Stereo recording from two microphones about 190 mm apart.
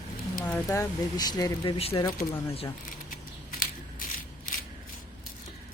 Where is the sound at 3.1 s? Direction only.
50° left (ahead or behind).